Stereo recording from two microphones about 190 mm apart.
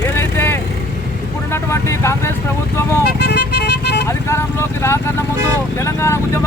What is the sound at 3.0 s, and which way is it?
Vehicle, 60° left (ahead or behind).